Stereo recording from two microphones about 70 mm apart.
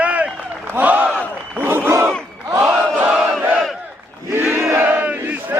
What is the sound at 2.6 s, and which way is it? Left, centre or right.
Chant, right.